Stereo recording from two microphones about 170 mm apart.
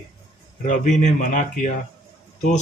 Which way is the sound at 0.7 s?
45° left (ahead or behind).